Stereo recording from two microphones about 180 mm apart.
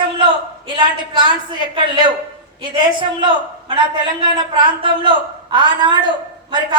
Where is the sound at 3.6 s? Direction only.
25° right (ahead or behind).